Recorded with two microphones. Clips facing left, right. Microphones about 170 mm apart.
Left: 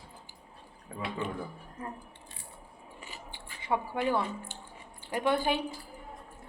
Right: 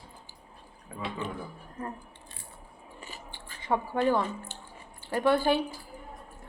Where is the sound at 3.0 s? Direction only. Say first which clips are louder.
Right 1 dB; 15° left (ahead or behind).